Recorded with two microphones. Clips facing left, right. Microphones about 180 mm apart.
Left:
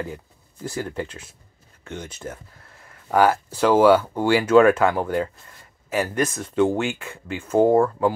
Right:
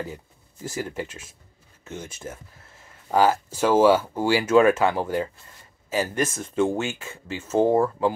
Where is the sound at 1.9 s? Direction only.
25° right (ahead or behind).